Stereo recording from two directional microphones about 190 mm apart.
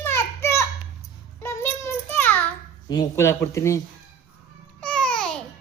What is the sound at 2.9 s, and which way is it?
Speech, 15° left (ahead or behind).